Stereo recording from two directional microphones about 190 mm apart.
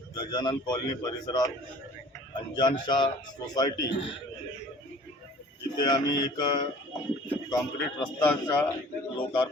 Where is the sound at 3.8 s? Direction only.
70° left (ahead or behind).